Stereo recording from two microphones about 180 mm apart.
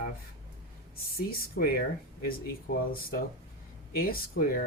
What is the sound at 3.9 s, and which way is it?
Speech, 55° left (ahead or behind).